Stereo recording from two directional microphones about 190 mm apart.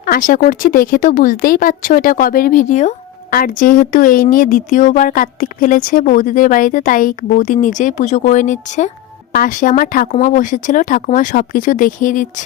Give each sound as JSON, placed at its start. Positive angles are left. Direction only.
{"t": 0.0, "sound": "speech", "side_deg": 45}